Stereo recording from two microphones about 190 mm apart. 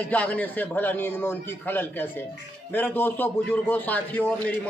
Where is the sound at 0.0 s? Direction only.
5° left (ahead or behind).